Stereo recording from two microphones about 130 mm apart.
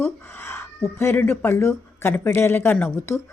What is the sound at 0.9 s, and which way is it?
Speech, 15° left (ahead or behind).